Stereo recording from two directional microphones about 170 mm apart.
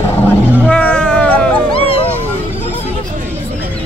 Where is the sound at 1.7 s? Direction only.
35° left (ahead or behind).